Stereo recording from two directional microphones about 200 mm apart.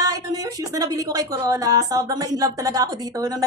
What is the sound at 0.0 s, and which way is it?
A woman's voice, 15° right (ahead or behind).